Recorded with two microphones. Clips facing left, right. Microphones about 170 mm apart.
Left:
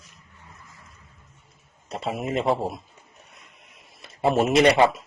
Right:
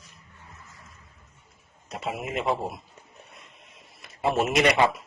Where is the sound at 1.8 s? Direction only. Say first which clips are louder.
Left 4 dB; 30° left (ahead or behind).